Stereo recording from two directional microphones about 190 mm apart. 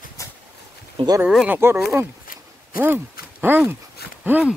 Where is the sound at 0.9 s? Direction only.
20° right (ahead or behind).